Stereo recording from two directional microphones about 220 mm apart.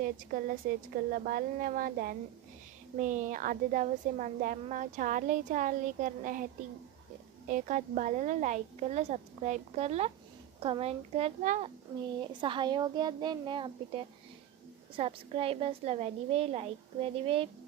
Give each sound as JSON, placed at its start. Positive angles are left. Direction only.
{"t": 0.0, "sound": "a woman's voice", "side_deg": -40}
{"t": 7.5, "sound": "a woman's voice", "side_deg": -35}